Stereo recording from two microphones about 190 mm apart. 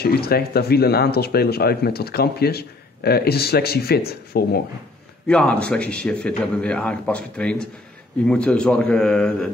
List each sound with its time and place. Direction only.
0.0 s speech: 55° left (ahead or behind)
5.3 s a man's voice: 5° left (ahead or behind)